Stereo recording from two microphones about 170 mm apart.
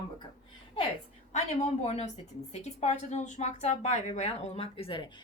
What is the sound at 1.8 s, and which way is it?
A woman's voice, 40° left (ahead or behind).